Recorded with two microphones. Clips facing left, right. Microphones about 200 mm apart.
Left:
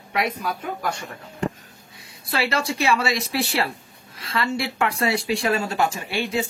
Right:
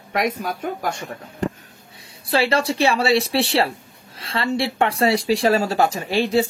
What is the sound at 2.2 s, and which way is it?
Speech, 30° right (ahead or behind).